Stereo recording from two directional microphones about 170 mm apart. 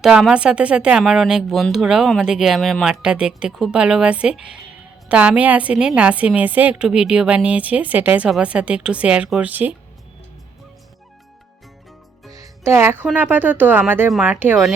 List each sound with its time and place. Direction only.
0.0 s a woman's voice: centre (ahead or behind)
12.3 s music: 20° right (ahead or behind)
13.1 s a woman's voice: 10° right (ahead or behind)